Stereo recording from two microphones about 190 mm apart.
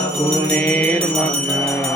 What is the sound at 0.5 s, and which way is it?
Music, 10° left (ahead or behind).